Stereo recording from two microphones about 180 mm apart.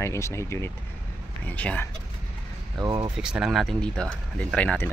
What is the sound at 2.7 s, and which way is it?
Speech, 20° right (ahead or behind).